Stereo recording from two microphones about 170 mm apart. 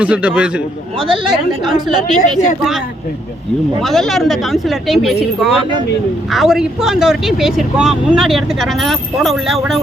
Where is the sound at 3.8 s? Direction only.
Centre (ahead or behind).